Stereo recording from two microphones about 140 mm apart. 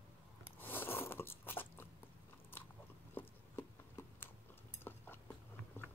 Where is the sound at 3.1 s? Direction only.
20° left (ahead or behind).